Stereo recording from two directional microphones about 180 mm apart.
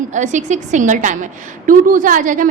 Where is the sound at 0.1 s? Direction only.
40° right (ahead or behind).